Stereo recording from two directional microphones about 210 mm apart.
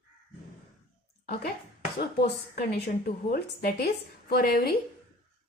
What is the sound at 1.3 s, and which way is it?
A woman's voice, 45° left (ahead or behind).